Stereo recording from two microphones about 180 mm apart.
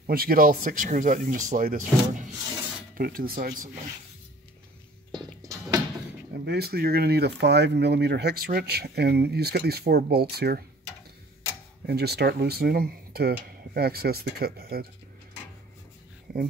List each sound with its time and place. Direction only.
0.0 s speech: 55° right (ahead or behind)
5.1 s music: 20° right (ahead or behind)
6.4 s speech: 65° right (ahead or behind)
11.8 s speech: 65° right (ahead or behind)